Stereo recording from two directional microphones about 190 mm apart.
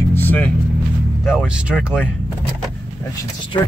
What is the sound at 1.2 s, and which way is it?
Speech, centre (ahead or behind).